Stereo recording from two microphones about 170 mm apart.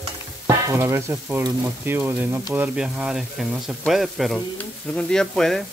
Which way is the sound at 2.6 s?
5° right (ahead or behind).